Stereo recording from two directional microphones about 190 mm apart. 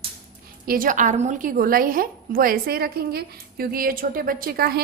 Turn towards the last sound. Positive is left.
turn(degrees=-50)  # may be behind; listen again after turning